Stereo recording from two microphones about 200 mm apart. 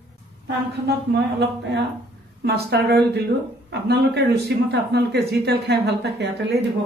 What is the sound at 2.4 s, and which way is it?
Speech, 55° right (ahead or behind).